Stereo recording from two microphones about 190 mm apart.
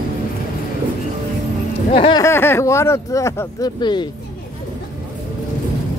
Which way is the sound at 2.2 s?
10° left (ahead or behind).